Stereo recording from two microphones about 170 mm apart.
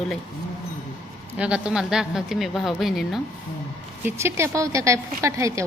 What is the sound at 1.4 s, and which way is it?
A woman's voice, 5° right (ahead or behind).